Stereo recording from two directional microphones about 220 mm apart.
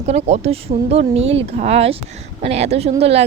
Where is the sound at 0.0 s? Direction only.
30° right (ahead or behind).